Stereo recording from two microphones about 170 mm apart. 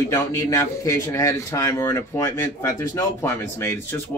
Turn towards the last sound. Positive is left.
turn(degrees=15)  # may be behind; listen again after turning